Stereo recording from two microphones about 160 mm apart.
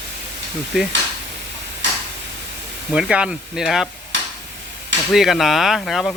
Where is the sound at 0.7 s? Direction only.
5° right (ahead or behind).